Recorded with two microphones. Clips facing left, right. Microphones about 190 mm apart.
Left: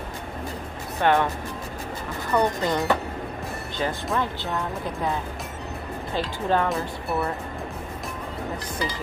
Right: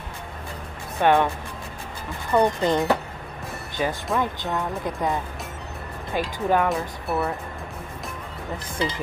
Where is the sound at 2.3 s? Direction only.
20° right (ahead or behind).